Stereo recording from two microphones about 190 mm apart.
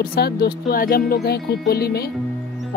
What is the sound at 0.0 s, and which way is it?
Speech, 55° left (ahead or behind).